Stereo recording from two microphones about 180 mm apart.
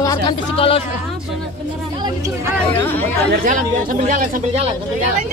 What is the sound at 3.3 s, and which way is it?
Speech, 50° right (ahead or behind).